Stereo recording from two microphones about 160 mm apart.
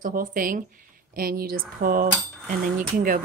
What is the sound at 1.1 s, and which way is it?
Speech, 70° right (ahead or behind).